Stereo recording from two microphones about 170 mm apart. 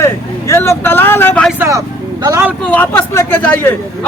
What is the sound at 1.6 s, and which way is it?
Speech, 20° right (ahead or behind).